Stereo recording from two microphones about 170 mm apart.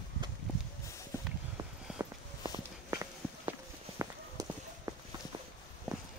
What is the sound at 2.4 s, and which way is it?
Walk, 20° right (ahead or behind).